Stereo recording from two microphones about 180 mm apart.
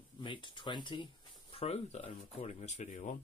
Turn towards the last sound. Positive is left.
turn(degrees=40)  # may be behind; listen again after turning